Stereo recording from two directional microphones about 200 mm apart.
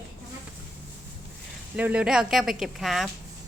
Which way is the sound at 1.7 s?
5° right (ahead or behind).